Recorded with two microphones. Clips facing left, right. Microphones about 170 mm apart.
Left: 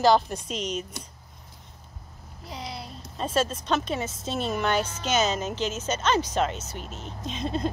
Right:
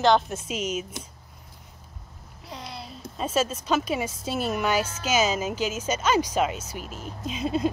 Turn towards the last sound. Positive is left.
turn(degrees=-10)  # may be behind; listen again after turning